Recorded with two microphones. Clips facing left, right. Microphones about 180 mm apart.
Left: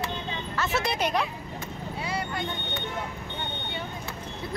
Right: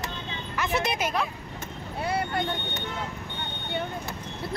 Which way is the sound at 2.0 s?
55° right (ahead or behind).